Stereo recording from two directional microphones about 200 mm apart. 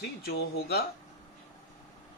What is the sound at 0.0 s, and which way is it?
Speech, 50° left (ahead or behind).